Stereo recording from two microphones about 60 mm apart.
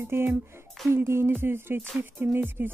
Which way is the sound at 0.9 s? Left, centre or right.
Right.